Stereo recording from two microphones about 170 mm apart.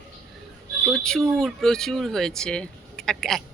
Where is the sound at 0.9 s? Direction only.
5° left (ahead or behind).